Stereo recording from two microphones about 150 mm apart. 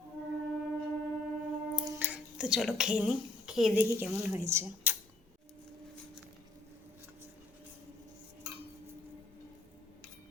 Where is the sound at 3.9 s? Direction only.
15° right (ahead or behind).